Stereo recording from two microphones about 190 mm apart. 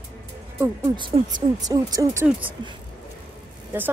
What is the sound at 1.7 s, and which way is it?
Speech, 20° right (ahead or behind).